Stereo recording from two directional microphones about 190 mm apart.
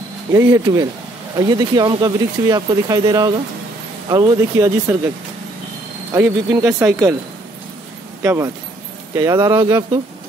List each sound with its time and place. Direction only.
0.3 s speech: 15° right (ahead or behind)
6.1 s speech: 15° right (ahead or behind)
8.2 s speech: 15° right (ahead or behind)